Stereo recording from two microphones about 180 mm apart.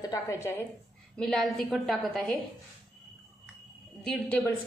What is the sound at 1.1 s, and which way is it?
A woman's voice, centre (ahead or behind).